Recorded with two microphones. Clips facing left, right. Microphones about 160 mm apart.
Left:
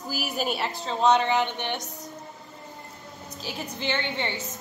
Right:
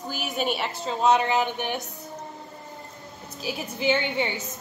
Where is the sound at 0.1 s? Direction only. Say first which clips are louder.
Right 1 dB; centre (ahead or behind).